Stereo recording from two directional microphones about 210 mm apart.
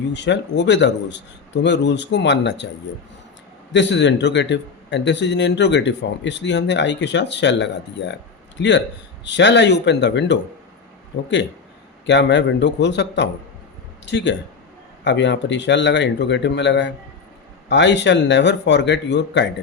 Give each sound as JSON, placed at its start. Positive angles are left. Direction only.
{"t": 0.1, "sound": "a man's voice", "side_deg": 55}
{"t": 3.7, "sound": "a man's voice", "side_deg": 55}
{"t": 12.0, "sound": "a man's voice", "side_deg": 55}